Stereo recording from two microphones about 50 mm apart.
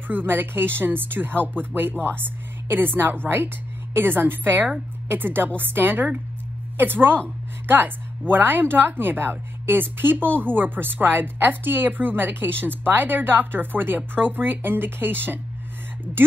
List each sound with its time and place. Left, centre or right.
0.1 s a woman's voice: right